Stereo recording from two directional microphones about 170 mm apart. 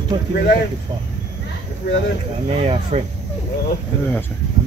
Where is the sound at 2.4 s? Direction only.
35° right (ahead or behind).